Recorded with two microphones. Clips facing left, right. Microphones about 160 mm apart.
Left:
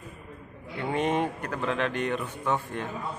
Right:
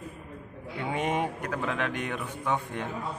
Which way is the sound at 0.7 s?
10° right (ahead or behind).